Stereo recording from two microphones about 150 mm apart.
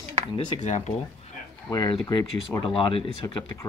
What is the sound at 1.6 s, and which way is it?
Speech, 25° left (ahead or behind).